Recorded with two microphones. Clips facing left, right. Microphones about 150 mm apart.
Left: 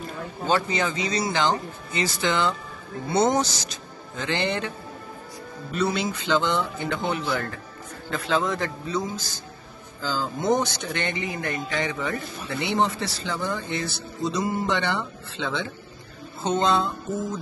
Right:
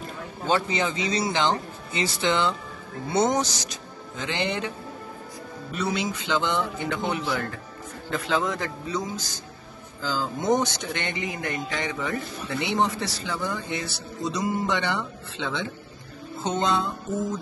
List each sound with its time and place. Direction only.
0.5 s speech: 20° right (ahead or behind)
10.4 s speech: 20° right (ahead or behind)
16.5 s music: 20° left (ahead or behind)